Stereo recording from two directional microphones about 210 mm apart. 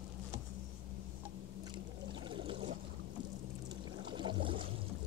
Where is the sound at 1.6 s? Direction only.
20° right (ahead or behind).